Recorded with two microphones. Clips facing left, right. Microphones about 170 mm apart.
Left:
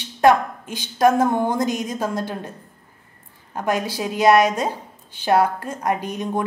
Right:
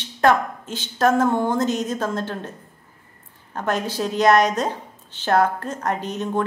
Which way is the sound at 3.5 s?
10° left (ahead or behind).